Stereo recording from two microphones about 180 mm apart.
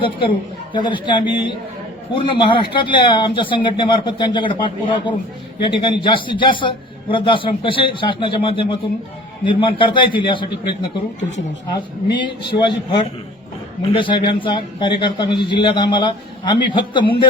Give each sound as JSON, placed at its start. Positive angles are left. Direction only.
{"t": 0.7, "sound": "a man's voice", "side_deg": 25}